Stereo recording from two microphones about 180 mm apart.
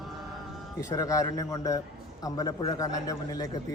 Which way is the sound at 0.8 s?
20° left (ahead or behind).